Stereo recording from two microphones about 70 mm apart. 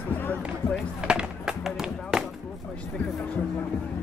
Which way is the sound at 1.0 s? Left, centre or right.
Centre.